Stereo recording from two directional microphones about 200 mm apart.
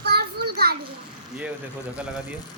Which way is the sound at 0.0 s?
55° right (ahead or behind).